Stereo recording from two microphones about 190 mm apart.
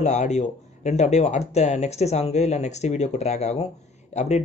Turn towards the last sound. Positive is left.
turn(degrees=35)  # may be behind; listen again after turning